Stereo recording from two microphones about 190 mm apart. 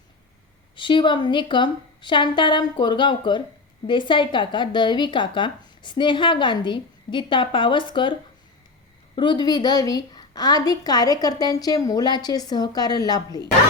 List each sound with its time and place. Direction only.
0.8 s speech: 25° left (ahead or behind)
9.1 s speech: 25° left (ahead or behind)